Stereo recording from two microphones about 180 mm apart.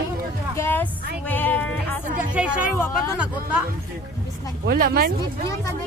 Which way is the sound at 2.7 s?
15° left (ahead or behind).